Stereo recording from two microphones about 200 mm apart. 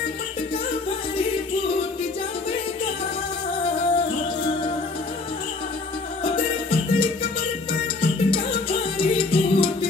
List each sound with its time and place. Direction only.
6.2 s music: 25° left (ahead or behind)